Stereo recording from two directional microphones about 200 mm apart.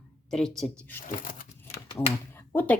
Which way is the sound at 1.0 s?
40° left (ahead or behind).